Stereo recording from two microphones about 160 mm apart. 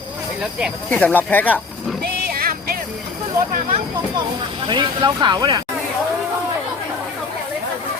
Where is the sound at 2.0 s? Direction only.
70° right (ahead or behind).